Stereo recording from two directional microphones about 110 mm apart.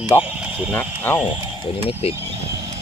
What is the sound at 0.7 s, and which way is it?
Speech, 15° left (ahead or behind).